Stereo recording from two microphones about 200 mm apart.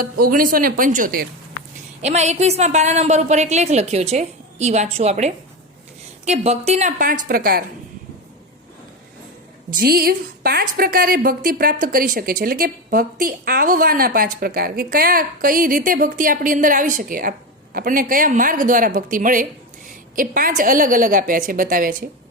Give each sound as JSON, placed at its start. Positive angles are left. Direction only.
{"t": 0.0, "sound": "a woman's voice", "side_deg": -45}
{"t": 2.0, "sound": "a woman's voice", "side_deg": -35}
{"t": 9.6, "sound": "a woman's voice", "side_deg": -45}